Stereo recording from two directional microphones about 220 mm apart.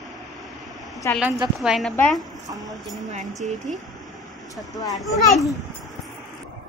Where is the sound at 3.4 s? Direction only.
35° right (ahead or behind).